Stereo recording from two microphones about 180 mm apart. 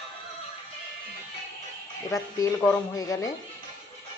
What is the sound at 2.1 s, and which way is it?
Speech, 15° left (ahead or behind).